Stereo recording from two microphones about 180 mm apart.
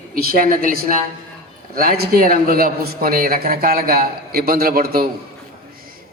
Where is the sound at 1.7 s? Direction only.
55° right (ahead or behind).